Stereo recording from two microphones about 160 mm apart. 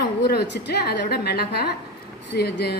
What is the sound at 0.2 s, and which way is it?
A woman's voice, 90° left.